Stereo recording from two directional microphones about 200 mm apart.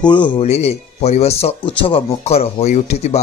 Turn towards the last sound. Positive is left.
turn(degrees=35)  # may be behind; listen again after turning